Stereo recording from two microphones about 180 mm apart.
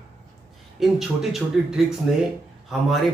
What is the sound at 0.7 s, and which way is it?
Speech, centre (ahead or behind).